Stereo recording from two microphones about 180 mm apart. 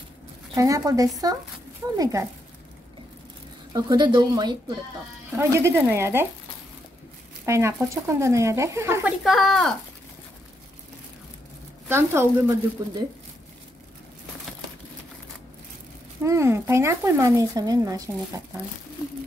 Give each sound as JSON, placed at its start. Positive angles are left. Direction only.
{"t": 0.6, "sound": "speech", "side_deg": -20}
{"t": 3.7, "sound": "speech", "side_deg": -25}
{"t": 5.4, "sound": "speech", "side_deg": -15}
{"t": 7.4, "sound": "speech", "side_deg": -15}
{"t": 9.2, "sound": "speech", "side_deg": 0}
{"t": 11.9, "sound": "speech", "side_deg": -15}
{"t": 16.3, "sound": "speech", "side_deg": -15}